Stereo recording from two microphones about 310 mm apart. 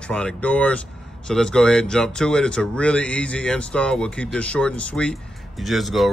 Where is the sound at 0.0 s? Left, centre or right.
Centre.